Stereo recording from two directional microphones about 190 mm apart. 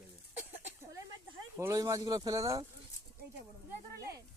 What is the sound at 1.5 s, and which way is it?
Speech, 15° right (ahead or behind).